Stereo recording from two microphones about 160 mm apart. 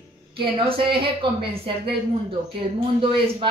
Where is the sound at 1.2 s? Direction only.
30° right (ahead or behind).